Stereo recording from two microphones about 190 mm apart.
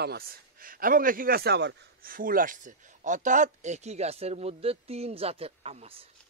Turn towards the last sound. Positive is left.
turn(degrees=-35)  # may be behind; listen again after turning